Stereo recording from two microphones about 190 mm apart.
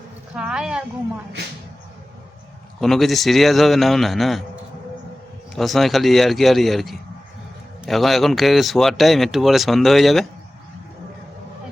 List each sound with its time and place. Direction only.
0.3 s a woman's voice: 5° right (ahead or behind)
2.8 s speech: centre (ahead or behind)
5.5 s speech: centre (ahead or behind)